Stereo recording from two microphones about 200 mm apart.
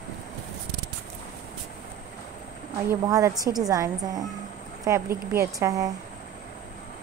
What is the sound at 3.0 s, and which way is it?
A woman's voice, 15° right (ahead or behind).